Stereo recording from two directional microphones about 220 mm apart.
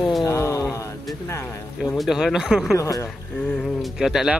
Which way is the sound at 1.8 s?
Centre (ahead or behind).